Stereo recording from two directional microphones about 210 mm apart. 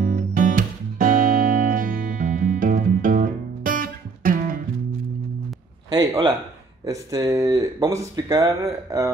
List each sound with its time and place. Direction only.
0.0 s music: 40° right (ahead or behind)
5.9 s speech: 20° right (ahead or behind)